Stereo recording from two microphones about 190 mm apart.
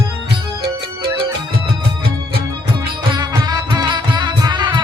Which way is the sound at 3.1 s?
25° right (ahead or behind).